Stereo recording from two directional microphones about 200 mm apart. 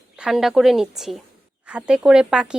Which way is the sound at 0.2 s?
Centre (ahead or behind).